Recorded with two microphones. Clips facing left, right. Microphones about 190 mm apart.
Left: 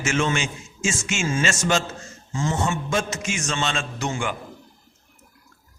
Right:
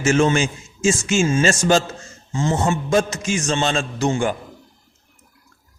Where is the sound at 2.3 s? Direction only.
25° right (ahead or behind).